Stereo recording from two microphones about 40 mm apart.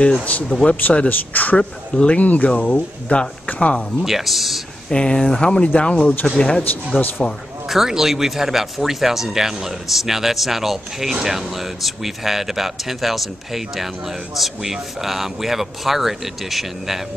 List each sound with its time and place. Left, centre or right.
0.2 s a man's voice: left
1.6 s speech: left
2.1 s speech: left
4.0 s speech: centre
4.8 s speech: centre
7.0 s a man's voice: left
7.6 s speech: centre